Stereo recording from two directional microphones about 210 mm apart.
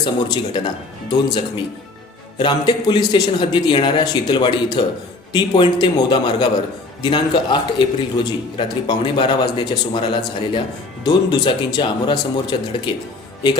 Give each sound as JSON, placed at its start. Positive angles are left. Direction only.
{"t": 0.0, "sound": "a man's voice", "side_deg": 20}
{"t": 2.4, "sound": "a man's voice", "side_deg": 20}